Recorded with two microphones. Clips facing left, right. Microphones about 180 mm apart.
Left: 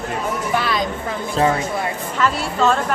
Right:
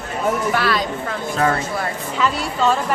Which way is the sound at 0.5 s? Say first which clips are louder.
Right 1 dB; 15° left (ahead or behind).